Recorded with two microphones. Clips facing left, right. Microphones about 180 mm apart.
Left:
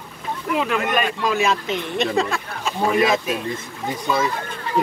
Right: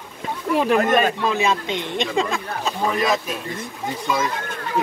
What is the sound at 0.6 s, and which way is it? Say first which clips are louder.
Speech: right 5 dB; 35° right (ahead or behind).